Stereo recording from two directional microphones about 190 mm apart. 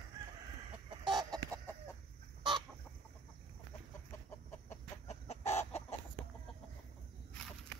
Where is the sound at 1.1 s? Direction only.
20° right (ahead or behind).